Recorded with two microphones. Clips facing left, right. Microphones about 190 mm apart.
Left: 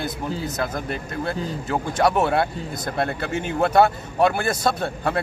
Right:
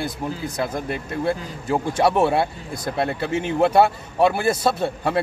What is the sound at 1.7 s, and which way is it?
Speech, 10° right (ahead or behind).